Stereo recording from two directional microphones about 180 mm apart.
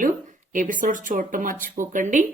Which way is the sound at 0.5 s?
45° right (ahead or behind).